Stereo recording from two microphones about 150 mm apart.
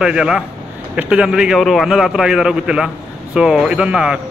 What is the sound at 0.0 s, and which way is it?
A man's voice, 5° right (ahead or behind).